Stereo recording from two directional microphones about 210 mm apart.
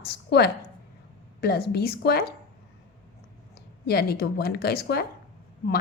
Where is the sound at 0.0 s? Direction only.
50° left (ahead or behind).